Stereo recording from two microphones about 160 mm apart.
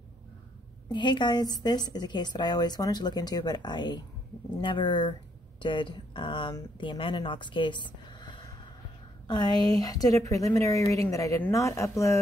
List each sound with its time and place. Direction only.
0.9 s speech: 30° left (ahead or behind)